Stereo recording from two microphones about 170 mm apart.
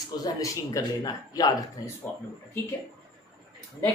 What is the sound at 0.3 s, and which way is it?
A woman's voice, 20° left (ahead or behind).